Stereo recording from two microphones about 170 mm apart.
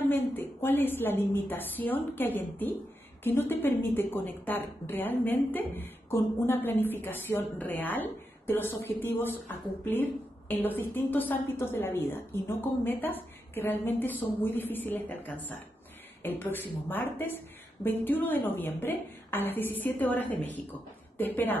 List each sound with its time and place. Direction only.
0.1 s a woman's voice: 15° left (ahead or behind)